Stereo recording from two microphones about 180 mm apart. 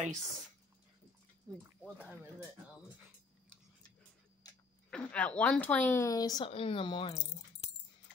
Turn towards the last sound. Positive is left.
turn(degrees=25)  # may be behind; listen again after turning